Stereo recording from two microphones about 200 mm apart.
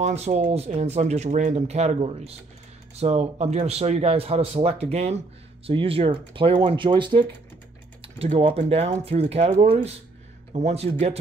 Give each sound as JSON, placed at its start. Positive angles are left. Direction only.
{"t": 0.0, "sound": "speech", "side_deg": -30}